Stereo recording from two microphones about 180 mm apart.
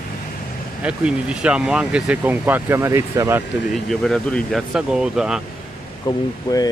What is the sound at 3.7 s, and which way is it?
Speech, centre (ahead or behind).